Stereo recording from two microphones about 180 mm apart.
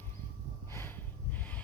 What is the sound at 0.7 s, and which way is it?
Snort, 10° left (ahead or behind).